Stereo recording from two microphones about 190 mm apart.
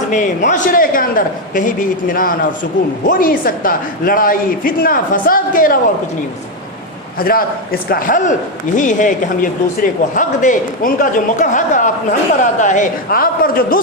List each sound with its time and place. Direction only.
0.1 s speech: 40° left (ahead or behind)
7.2 s speech: 50° left (ahead or behind)